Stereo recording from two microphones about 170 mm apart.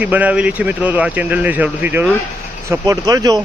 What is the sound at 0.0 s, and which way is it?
Speech, 10° right (ahead or behind).